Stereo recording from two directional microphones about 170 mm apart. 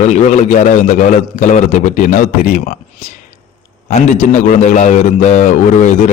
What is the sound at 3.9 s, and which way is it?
A man's voice, 45° left (ahead or behind).